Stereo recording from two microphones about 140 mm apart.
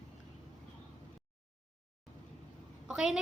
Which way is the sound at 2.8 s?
5° right (ahead or behind).